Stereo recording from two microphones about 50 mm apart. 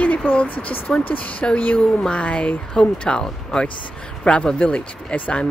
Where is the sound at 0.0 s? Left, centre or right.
Left.